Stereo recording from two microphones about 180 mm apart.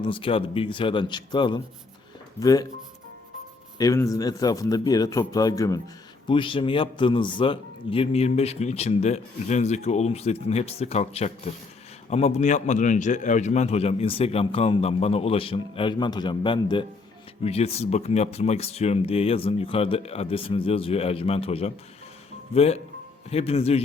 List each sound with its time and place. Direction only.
0.0 s a man's voice: 30° left (ahead or behind)
3.8 s a man's voice: 20° left (ahead or behind); by 23.8 s 35° left (ahead or behind)